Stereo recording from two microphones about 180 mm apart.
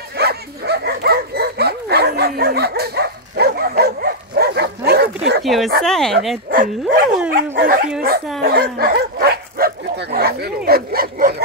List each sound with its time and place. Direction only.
0.2 s dog: 60° right (ahead or behind)
5.4 s speech: centre (ahead or behind)
6.5 s speech: 50° right (ahead or behind)
8.4 s dog: 60° right (ahead or behind)